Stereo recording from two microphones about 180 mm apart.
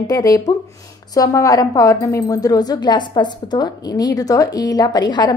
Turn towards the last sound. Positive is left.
turn(degrees=25)  # may be behind; listen again after turning